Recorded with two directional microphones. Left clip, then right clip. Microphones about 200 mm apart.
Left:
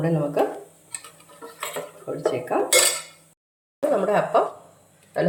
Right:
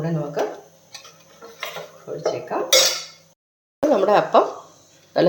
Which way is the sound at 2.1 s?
40° left (ahead or behind).